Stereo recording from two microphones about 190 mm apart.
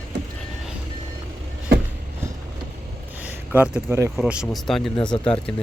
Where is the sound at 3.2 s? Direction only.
10° right (ahead or behind).